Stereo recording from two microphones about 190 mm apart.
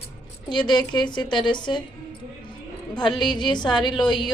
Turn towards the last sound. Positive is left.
turn(degrees=25)  # may be behind; listen again after turning